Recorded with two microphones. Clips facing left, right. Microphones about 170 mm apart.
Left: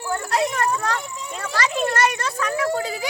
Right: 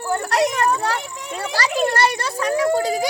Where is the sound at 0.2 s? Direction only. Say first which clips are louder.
Right 2 dB; 75° right (ahead or behind).